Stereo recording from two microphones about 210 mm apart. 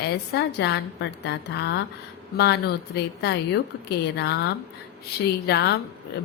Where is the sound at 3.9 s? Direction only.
50° left (ahead or behind).